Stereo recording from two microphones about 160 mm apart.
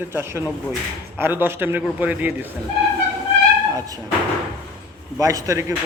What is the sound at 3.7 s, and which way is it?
Speech, 20° right (ahead or behind).